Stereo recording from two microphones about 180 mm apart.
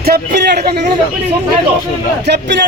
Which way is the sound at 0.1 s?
65° right (ahead or behind).